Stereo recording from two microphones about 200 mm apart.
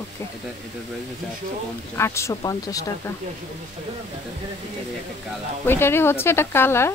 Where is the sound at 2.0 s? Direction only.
15° left (ahead or behind).